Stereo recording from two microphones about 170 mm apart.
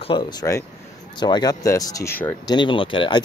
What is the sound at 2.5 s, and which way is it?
Speech, 30° left (ahead or behind).